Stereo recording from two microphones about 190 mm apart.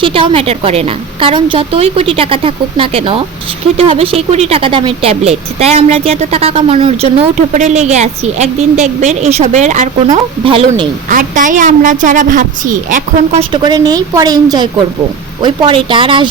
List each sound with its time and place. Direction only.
0.0 s a woman's voice: 30° right (ahead or behind)
10.1 s a woman's voice: 30° right (ahead or behind)
11.1 s a woman's voice: 45° right (ahead or behind)
13.5 s a woman's voice: 20° right (ahead or behind)